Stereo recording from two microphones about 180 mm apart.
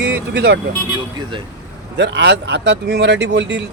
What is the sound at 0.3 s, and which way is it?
Speech, 70° right (ahead or behind).